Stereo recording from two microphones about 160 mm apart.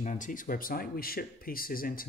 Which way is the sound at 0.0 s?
50° left (ahead or behind).